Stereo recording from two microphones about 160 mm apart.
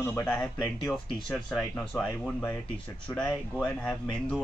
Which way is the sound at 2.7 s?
5° left (ahead or behind).